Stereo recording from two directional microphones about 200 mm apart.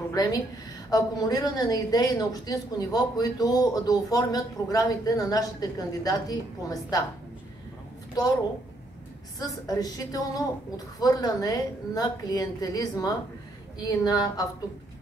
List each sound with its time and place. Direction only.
0.1 s a woman's voice: 20° left (ahead or behind)
9.4 s a woman's voice: 20° left (ahead or behind)